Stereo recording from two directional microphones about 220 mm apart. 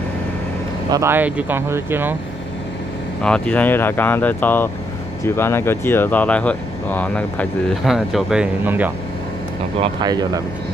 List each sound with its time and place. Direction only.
0.8 s speech: 15° right (ahead or behind)
3.2 s speech: 5° left (ahead or behind)
9.8 s speech: 20° right (ahead or behind)